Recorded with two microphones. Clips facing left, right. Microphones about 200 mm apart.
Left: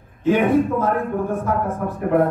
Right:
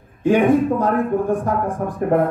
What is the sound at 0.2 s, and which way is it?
Speech, 15° right (ahead or behind).